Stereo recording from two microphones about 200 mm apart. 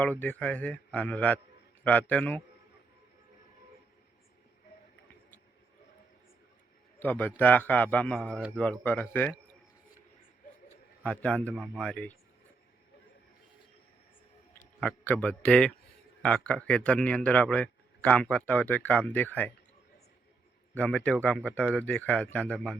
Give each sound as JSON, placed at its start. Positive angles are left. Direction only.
{"t": 0.0, "sound": "speech", "side_deg": 5}
{"t": 7.0, "sound": "speech", "side_deg": 10}
{"t": 11.0, "sound": "speech", "side_deg": 5}
{"t": 14.8, "sound": "speech", "side_deg": 10}
{"t": 20.7, "sound": "speech", "side_deg": 5}